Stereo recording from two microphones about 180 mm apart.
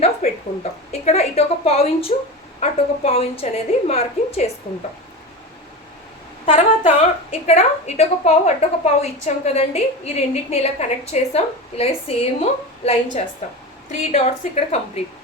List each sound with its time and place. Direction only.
0.0 s a woman's voice: 35° left (ahead or behind)
6.4 s a woman's voice: 40° left (ahead or behind)